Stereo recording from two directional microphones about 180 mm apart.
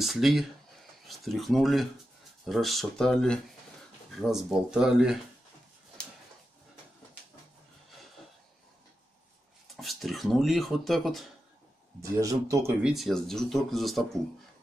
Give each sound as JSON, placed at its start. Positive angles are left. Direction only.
{"t": 0.0, "sound": "speech", "side_deg": 0}
{"t": 9.8, "sound": "speech", "side_deg": 0}
{"t": 12.0, "sound": "speech", "side_deg": -20}
{"t": 12.8, "sound": "speech", "side_deg": 0}